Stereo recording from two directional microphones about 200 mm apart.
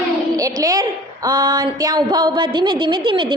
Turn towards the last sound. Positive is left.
turn(degrees=-25)  # may be behind; listen again after turning